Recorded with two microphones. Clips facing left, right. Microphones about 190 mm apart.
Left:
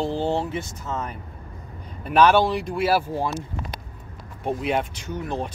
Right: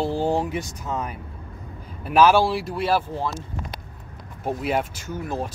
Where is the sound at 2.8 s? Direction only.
10° left (ahead or behind).